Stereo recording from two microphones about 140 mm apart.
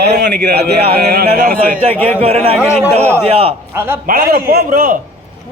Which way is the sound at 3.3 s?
45° right (ahead or behind).